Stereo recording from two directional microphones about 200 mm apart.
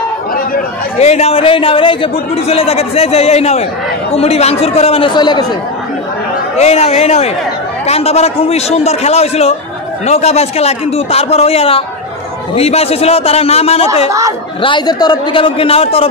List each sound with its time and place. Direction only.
0.9 s a man's voice: 30° left (ahead or behind)
6.5 s a man's voice: 35° left (ahead or behind)